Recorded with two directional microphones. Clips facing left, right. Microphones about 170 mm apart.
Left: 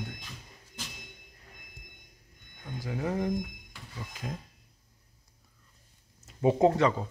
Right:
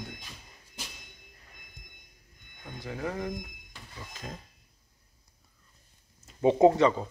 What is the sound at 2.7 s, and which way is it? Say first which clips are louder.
Speech: left 3 dB; 15° left (ahead or behind).